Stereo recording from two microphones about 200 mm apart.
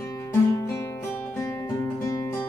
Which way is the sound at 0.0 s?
15° left (ahead or behind).